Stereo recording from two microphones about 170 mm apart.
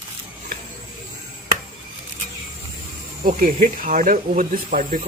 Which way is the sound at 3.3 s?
55° right (ahead or behind).